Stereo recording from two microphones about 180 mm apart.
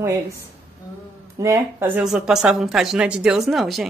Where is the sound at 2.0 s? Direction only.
5° right (ahead or behind).